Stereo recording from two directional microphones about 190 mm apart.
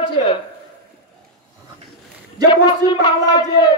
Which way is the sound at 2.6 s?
25° left (ahead or behind).